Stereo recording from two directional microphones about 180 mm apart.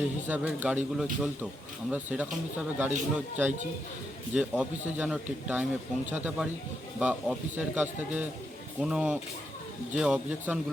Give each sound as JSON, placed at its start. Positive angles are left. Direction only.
{"t": 0.3, "sound": "a man's voice", "side_deg": -10}